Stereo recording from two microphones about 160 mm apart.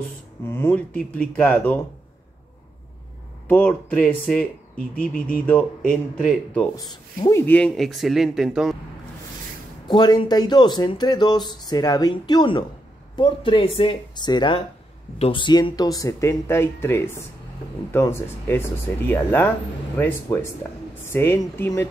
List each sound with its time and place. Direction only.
0.5 s speech: 15° left (ahead or behind)
3.4 s speech: 10° left (ahead or behind)
6.8 s speech: 20° left (ahead or behind); by 8.7 s centre (ahead or behind)
9.8 s speech: 25° left (ahead or behind)